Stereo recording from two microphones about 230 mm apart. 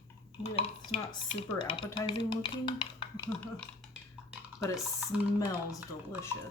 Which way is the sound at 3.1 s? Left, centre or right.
Centre.